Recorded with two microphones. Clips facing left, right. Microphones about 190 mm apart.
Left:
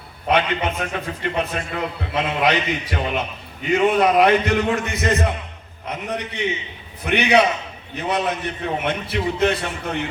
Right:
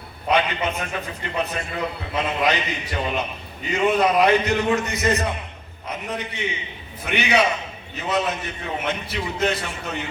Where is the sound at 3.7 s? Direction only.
55° left (ahead or behind).